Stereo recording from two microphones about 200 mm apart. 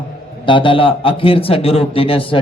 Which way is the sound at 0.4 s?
25° left (ahead or behind).